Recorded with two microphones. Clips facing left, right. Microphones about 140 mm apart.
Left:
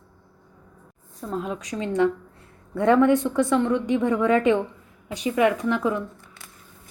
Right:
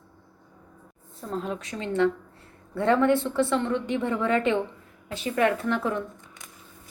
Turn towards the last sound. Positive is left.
turn(degrees=-20)  # may be behind; listen again after turning